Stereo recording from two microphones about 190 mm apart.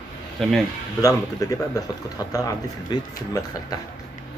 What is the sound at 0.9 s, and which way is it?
Speech, 20° left (ahead or behind).